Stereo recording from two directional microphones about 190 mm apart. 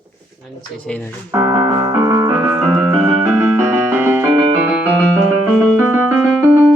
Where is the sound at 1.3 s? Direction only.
20° right (ahead or behind).